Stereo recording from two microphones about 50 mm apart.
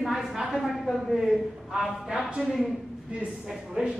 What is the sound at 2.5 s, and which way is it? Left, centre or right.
Speech, centre.